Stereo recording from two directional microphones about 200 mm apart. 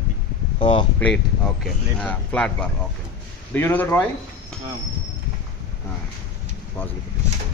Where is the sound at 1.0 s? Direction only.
5° left (ahead or behind).